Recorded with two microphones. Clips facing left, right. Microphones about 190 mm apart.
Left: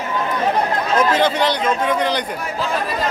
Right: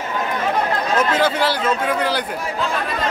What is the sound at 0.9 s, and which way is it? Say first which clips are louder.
A man's voice: left 2 dB; 5° right (ahead or behind).